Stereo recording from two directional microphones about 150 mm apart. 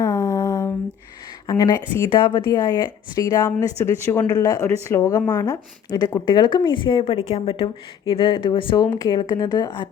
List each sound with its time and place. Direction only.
0.0 s a sound: 20° left (ahead or behind)
1.5 s speech: 25° left (ahead or behind)
2.0 s a woman's voice: 35° left (ahead or behind)
2.4 s a woman's voice: 20° left (ahead or behind)